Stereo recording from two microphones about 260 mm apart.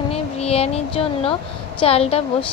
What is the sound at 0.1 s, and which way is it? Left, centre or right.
A woman's voice, left.